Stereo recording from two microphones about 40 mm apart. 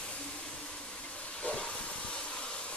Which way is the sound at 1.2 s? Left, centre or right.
Left.